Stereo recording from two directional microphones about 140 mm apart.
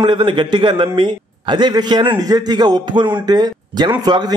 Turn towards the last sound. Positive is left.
turn(degrees=-30)  # may be behind; listen again after turning